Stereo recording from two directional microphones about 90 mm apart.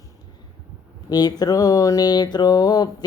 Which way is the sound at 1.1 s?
45° left (ahead or behind).